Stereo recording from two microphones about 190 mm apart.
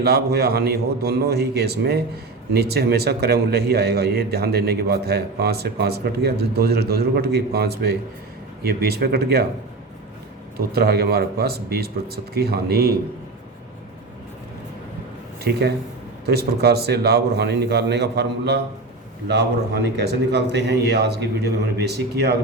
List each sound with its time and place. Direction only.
0.0 s a man's voice: 55° right (ahead or behind)
10.7 s a man's voice: 55° right (ahead or behind)
16.2 s a man's voice: 55° right (ahead or behind)